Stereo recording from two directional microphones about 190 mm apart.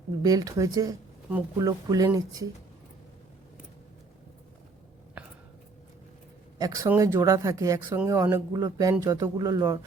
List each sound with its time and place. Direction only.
0.2 s speech: 20° right (ahead or behind)
6.6 s speech: 20° right (ahead or behind)